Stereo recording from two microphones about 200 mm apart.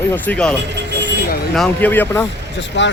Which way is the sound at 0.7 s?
60° right (ahead or behind).